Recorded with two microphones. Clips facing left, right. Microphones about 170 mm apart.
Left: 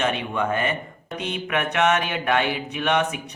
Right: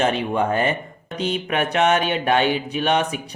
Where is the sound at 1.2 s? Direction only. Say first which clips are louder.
Right 4 dB; 30° right (ahead or behind).